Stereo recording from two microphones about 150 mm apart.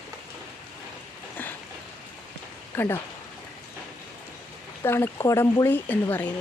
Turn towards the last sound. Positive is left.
turn(degrees=10)  # may be behind; listen again after turning